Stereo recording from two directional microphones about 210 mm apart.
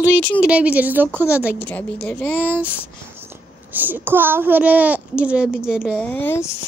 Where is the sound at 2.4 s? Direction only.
10° right (ahead or behind).